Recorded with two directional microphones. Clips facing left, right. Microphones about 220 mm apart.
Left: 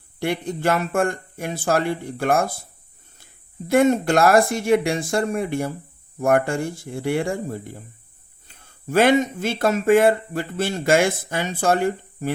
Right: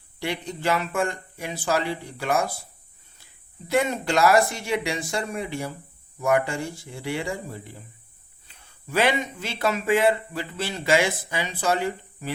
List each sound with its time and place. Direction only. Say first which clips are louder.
0.2 s speech: left 6 dB; 50° left (ahead or behind)
3.7 s speech: left 7 dB; 50° left (ahead or behind)